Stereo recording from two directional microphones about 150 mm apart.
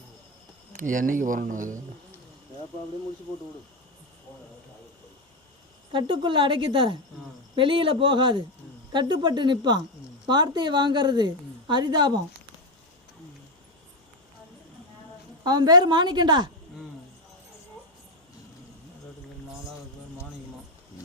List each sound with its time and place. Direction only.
0.7 s speech: 65° right (ahead or behind)
5.9 s a woman's voice: 35° right (ahead or behind)
15.4 s a woman's voice: 25° right (ahead or behind)